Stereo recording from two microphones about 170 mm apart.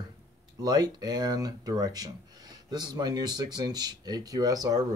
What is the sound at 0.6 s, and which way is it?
Speech, 25° right (ahead or behind).